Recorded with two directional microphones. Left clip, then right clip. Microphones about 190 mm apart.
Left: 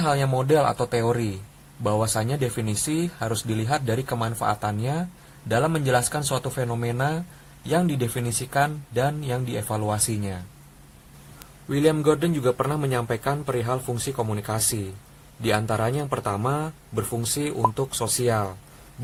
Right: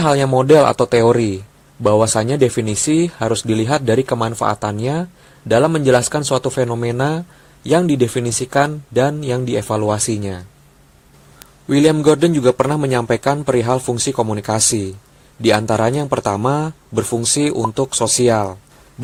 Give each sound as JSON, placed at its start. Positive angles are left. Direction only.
{"t": 0.0, "sound": "speech", "side_deg": -35}
{"t": 11.7, "sound": "speech", "side_deg": -30}